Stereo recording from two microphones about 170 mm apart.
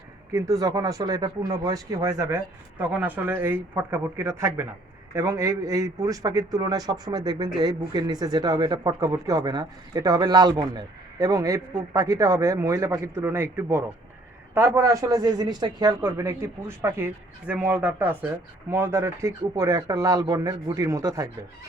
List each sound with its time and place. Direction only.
0.3 s speech: 20° right (ahead or behind)